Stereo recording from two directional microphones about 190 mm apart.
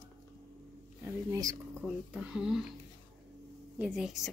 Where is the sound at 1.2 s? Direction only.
20° right (ahead or behind).